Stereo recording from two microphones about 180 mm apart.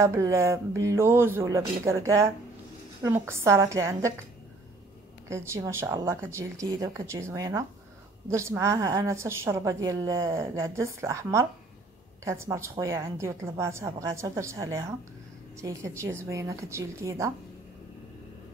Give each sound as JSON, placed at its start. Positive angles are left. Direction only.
{"t": 0.0, "sound": "a woman's voice", "side_deg": -15}
{"t": 5.3, "sound": "a woman's voice", "side_deg": -15}